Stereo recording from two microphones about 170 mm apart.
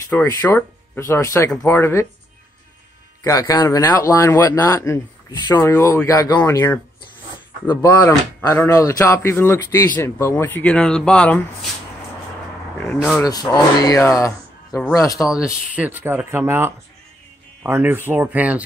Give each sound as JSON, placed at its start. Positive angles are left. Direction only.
{"t": 0.1, "sound": "speech", "side_deg": 15}
{"t": 3.3, "sound": "speech", "side_deg": 20}
{"t": 8.0, "sound": "speech", "side_deg": 15}
{"t": 12.8, "sound": "speech", "side_deg": 0}
{"t": 13.2, "sound": "speech", "side_deg": 20}
{"t": 14.7, "sound": "speech", "side_deg": 0}